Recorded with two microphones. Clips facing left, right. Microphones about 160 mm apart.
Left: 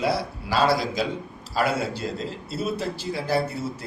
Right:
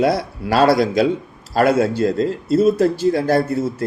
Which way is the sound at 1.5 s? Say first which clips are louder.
Right 9 dB; 50° right (ahead or behind).